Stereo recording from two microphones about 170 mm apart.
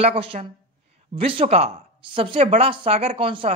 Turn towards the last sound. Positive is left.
turn(degrees=-30)  # may be behind; listen again after turning